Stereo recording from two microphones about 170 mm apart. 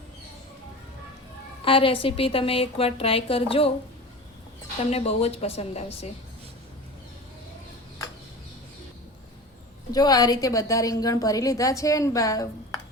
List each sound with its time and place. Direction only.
1.6 s a woman's voice: 30° left (ahead or behind)
4.9 s a woman's voice: 40° left (ahead or behind)
9.9 s a woman's voice: 20° left (ahead or behind)